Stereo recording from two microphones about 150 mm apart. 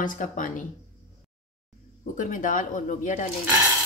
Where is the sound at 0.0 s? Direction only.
60° left (ahead or behind).